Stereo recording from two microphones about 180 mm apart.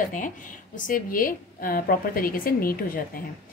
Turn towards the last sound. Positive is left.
turn(degrees=50)  # may be behind; listen again after turning